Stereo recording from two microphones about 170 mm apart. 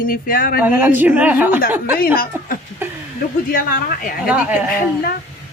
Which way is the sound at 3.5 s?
55° left (ahead or behind).